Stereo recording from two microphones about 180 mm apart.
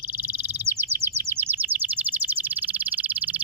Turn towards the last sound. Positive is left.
turn(degrees=-10)  # may be behind; listen again after turning